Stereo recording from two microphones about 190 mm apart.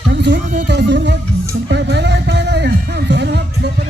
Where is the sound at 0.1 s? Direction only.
65° right (ahead or behind).